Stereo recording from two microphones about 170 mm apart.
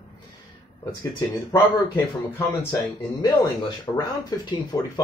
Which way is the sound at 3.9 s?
15° left (ahead or behind).